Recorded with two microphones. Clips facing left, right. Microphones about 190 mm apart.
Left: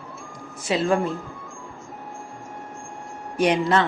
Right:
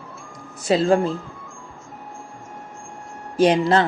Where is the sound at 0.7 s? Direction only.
35° right (ahead or behind).